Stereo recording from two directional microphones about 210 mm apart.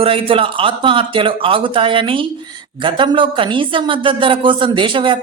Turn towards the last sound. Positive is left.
turn(degrees=-25)  # may be behind; listen again after turning